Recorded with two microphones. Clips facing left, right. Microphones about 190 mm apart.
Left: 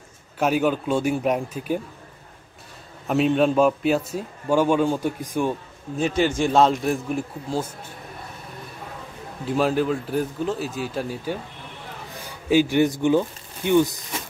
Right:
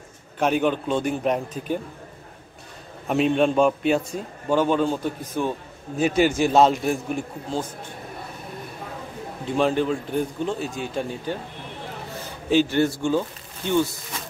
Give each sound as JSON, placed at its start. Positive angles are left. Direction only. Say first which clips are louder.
{"t": 0.4, "sound": "a man's voice", "louder": "even", "side_deg": 5}
{"t": 3.1, "sound": "a man's voice", "louder": "left 1 dB", "side_deg": 0}
{"t": 5.9, "sound": "a man's voice", "louder": "right 2 dB", "side_deg": -10}
{"t": 9.6, "sound": "a man's voice", "louder": "even", "side_deg": 5}
{"t": 12.4, "sound": "a man's voice", "louder": "left 1 dB", "side_deg": 10}